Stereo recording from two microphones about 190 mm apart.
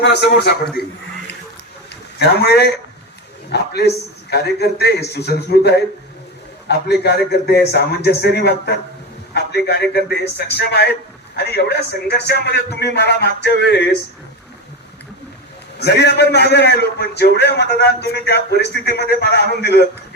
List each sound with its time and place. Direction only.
0.0 s a man's voice: 60° left (ahead or behind)
1.9 s a man's voice: 60° left (ahead or behind)
15.8 s a man's voice: 60° left (ahead or behind)